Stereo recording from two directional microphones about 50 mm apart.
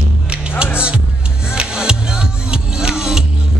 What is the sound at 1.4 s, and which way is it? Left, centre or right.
Music, centre.